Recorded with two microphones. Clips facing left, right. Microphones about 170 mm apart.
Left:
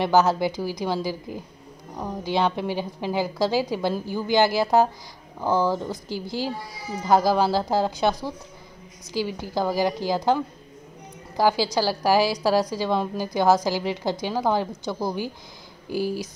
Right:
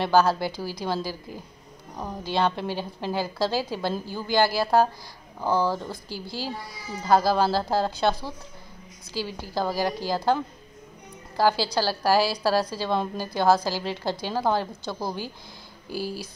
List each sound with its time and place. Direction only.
0.0 s a woman's voice: 20° left (ahead or behind)